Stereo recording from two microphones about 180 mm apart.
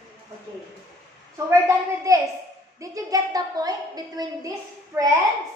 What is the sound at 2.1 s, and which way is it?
A woman's voice, 20° right (ahead or behind).